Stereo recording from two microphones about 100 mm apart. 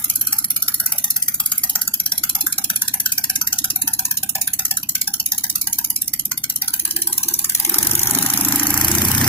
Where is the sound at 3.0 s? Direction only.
15° left (ahead or behind).